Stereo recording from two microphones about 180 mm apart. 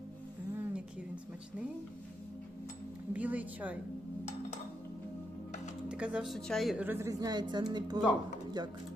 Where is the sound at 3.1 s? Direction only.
10° right (ahead or behind).